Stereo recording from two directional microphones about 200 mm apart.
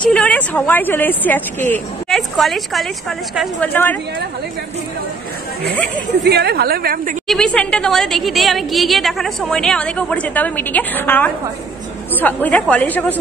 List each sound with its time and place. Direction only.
0.1 s a woman's voice: 5° left (ahead or behind)
6.2 s a woman's voice: 55° right (ahead or behind)
7.2 s a woman's voice: 5° left (ahead or behind)